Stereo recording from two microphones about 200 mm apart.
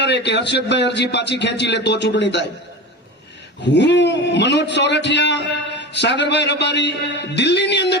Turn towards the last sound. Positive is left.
turn(degrees=60)  # may be behind; listen again after turning